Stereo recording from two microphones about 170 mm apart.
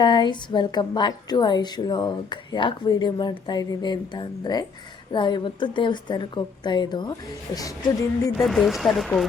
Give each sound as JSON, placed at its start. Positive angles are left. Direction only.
{"t": 0.0, "sound": "a woman's voice", "side_deg": 25}
{"t": 8.4, "sound": "speech", "side_deg": 0}